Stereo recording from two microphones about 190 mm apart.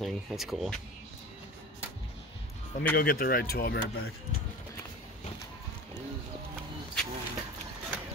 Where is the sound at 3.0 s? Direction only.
50° left (ahead or behind).